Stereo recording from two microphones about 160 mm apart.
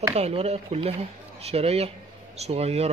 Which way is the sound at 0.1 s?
40° right (ahead or behind).